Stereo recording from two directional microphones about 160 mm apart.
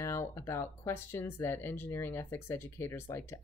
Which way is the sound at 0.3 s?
15° left (ahead or behind).